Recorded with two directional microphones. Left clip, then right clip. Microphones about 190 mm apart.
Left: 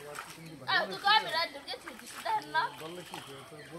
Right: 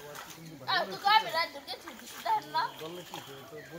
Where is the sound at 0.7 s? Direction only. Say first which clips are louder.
Even; 20° right (ahead or behind).